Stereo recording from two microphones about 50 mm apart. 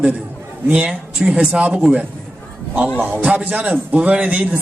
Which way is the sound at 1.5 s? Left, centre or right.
Right.